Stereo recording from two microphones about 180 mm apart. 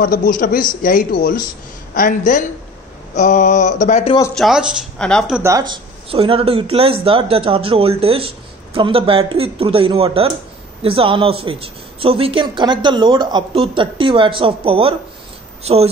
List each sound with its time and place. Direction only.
0.0 s mantra: 50° left (ahead or behind)
4.4 s speech: 5° right (ahead or behind)
5.4 s a woman's voice: 20° right (ahead or behind)